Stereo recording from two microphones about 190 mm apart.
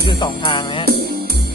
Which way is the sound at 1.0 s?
55° right (ahead or behind).